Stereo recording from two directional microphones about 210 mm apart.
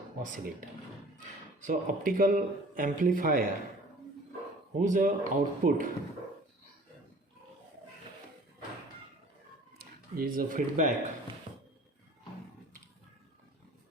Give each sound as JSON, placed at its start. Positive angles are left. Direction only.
{"t": 0.2, "sound": "a man's voice", "side_deg": -40}
{"t": 1.6, "sound": "a man's voice", "side_deg": -40}
{"t": 4.8, "sound": "a man's voice", "side_deg": -40}
{"t": 10.2, "sound": "a man's voice", "side_deg": -40}